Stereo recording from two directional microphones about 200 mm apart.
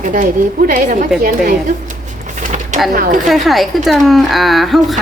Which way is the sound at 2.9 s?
45° right (ahead or behind).